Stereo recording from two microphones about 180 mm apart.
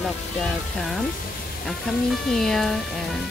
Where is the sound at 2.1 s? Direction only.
Centre (ahead or behind).